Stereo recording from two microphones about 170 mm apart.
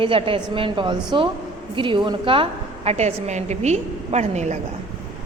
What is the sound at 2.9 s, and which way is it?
A woman's voice, 40° right (ahead or behind).